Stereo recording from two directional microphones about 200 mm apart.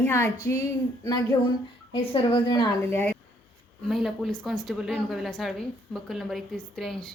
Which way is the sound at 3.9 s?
Centre (ahead or behind).